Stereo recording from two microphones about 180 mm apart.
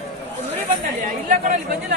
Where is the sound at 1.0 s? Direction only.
40° right (ahead or behind).